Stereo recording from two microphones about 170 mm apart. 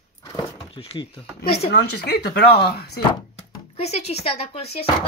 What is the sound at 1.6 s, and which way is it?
Speech, 75° left (ahead or behind).